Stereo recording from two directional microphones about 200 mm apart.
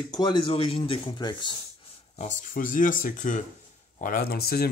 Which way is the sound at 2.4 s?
40° left (ahead or behind).